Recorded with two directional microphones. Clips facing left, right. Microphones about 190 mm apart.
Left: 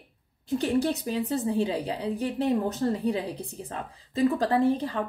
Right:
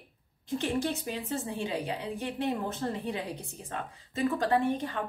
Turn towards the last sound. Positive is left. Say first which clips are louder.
# left 4 dB
turn(degrees=35)  # may be behind; listen again after turning